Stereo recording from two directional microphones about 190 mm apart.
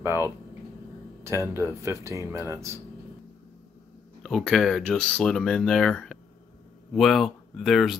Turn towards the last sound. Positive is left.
turn(degrees=0)  # may be behind; listen again after turning